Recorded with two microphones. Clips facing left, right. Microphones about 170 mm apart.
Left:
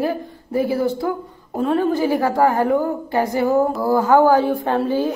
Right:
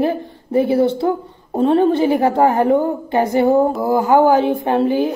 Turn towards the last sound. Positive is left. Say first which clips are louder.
# right 3 dB
turn(degrees=-15)  # may be behind; listen again after turning